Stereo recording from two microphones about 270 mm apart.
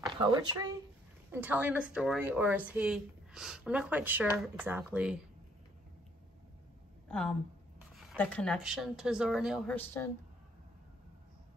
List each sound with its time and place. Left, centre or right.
0.0 s speech: centre
7.1 s a woman's voice: centre